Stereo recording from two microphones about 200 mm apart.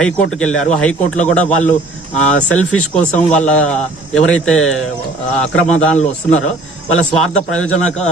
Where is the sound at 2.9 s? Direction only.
5° left (ahead or behind).